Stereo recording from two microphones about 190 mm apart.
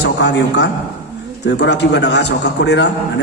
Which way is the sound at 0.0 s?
65° left (ahead or behind).